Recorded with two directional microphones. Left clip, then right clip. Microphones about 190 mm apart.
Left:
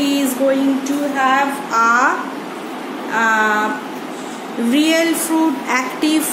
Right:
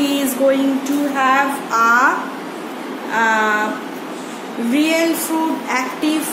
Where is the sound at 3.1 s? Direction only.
20° left (ahead or behind).